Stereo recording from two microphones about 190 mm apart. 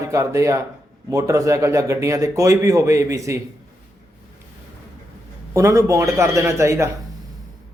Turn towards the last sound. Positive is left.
turn(degrees=-15)  # may be behind; listen again after turning